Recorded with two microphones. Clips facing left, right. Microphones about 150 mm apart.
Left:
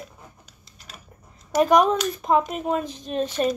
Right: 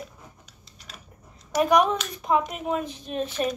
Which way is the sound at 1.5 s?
Centre (ahead or behind).